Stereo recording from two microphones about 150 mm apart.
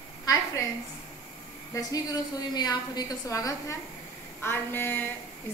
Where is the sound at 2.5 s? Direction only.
25° left (ahead or behind).